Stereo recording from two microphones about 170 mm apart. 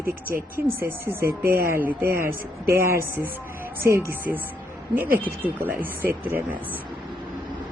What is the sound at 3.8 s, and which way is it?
Speech, 15° right (ahead or behind).